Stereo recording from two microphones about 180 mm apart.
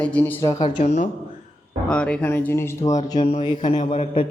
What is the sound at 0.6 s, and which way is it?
Speech, 40° left (ahead or behind).